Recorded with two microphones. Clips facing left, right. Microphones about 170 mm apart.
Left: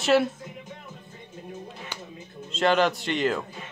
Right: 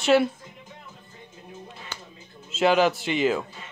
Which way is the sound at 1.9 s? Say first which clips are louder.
Left 1 dB; 15° left (ahead or behind).